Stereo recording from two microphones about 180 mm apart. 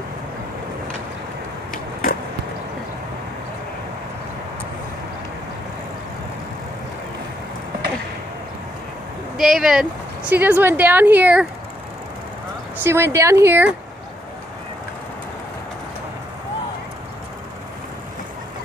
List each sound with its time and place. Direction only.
1.7 s a sound: 50° left (ahead or behind)
9.4 s a woman's voice: 5° right (ahead or behind)
12.8 s a woman's voice: 15° right (ahead or behind)